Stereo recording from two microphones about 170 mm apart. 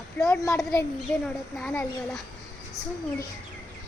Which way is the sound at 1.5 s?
5° left (ahead or behind).